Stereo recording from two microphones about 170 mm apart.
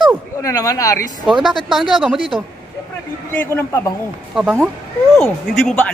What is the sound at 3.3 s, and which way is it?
Speech, 10° left (ahead or behind).